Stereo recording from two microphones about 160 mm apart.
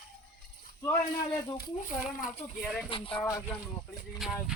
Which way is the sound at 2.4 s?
20° left (ahead or behind).